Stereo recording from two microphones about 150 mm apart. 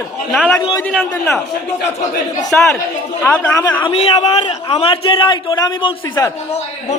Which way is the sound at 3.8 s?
40° left (ahead or behind).